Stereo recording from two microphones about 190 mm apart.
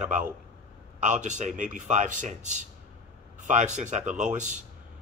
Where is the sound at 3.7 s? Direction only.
40° right (ahead or behind).